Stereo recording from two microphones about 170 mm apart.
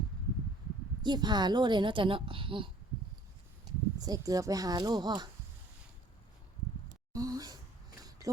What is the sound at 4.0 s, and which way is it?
Speech, 20° right (ahead or behind).